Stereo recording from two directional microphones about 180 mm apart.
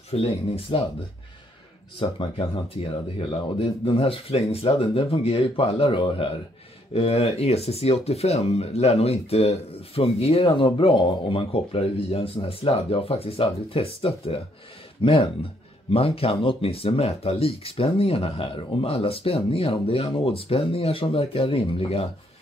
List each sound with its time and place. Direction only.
0.1 s speech: 35° left (ahead or behind)
2.0 s speech: 30° left (ahead or behind)